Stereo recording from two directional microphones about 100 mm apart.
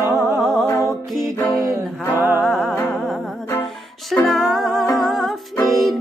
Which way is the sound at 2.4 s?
Centre (ahead or behind).